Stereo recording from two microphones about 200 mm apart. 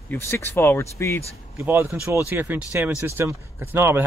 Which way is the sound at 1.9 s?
15° left (ahead or behind).